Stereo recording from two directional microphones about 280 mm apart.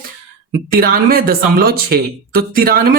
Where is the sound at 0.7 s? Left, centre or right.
Right.